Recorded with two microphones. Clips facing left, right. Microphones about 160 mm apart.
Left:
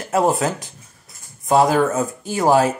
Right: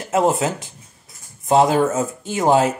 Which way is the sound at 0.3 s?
20° right (ahead or behind).